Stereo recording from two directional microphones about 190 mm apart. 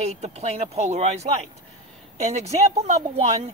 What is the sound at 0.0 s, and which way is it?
Speech, 35° right (ahead or behind).